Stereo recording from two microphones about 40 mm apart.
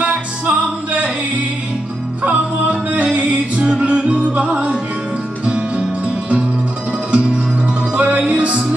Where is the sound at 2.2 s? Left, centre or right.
Right.